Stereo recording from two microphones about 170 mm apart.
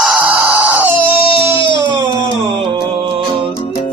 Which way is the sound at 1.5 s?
30° left (ahead or behind).